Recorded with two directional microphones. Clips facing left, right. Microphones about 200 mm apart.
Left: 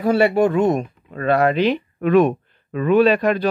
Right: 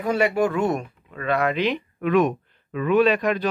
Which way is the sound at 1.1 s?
35° left (ahead or behind).